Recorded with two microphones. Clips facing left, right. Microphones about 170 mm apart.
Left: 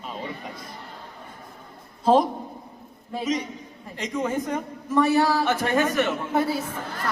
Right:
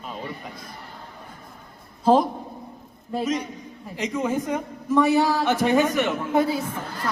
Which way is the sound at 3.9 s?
5° right (ahead or behind).